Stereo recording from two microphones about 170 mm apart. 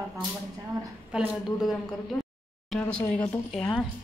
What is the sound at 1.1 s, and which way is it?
A woman's voice, 5° right (ahead or behind).